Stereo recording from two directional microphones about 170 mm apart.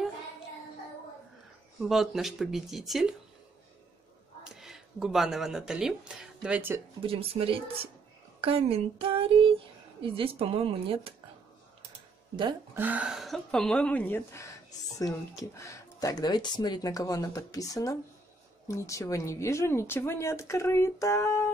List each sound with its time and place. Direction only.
1.8 s speech: centre (ahead or behind)
4.5 s speech: 5° right (ahead or behind)
7.0 s speech: 35° right (ahead or behind)
12.7 s speech: 10° right (ahead or behind); by 21.5 s 15° left (ahead or behind)